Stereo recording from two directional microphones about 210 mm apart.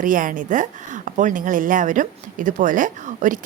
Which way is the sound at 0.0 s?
40° right (ahead or behind).